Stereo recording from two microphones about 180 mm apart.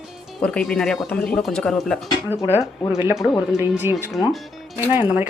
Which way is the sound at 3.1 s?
Centre (ahead or behind).